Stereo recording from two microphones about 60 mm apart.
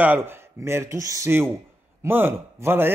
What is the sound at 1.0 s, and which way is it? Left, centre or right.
Speech, right.